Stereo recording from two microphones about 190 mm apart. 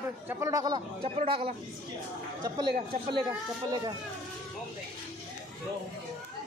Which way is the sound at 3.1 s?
20° right (ahead or behind).